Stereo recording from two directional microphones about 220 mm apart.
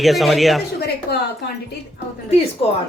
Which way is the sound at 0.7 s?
45° left (ahead or behind).